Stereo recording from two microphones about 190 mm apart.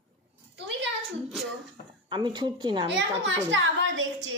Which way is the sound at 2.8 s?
70° right (ahead or behind).